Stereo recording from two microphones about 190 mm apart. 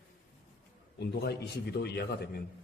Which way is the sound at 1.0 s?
60° left (ahead or behind).